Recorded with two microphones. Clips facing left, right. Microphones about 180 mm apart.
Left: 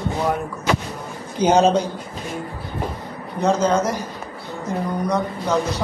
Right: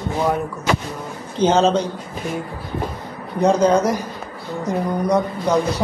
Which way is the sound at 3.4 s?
15° right (ahead or behind).